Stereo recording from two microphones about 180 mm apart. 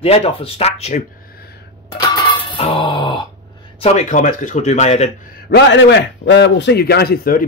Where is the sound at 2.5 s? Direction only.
30° left (ahead or behind).